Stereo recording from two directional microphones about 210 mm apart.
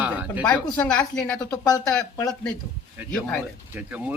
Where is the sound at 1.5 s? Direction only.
15° left (ahead or behind).